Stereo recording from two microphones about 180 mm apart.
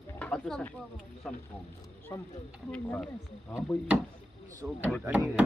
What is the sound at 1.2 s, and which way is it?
Speech, 5° left (ahead or behind).